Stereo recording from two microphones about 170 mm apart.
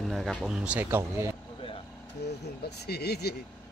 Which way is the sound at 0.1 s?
Centre (ahead or behind).